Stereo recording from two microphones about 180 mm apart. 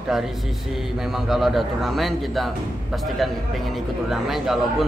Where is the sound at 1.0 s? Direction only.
Centre (ahead or behind).